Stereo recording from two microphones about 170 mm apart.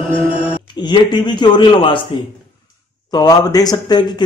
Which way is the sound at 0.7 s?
25° left (ahead or behind).